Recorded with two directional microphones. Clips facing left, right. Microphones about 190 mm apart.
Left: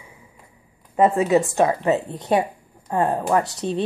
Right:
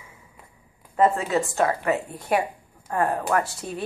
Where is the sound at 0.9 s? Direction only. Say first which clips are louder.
Left 4 dB; 20° left (ahead or behind).